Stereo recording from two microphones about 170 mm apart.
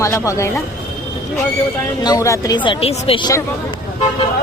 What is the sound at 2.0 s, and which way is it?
Speech, 20° left (ahead or behind).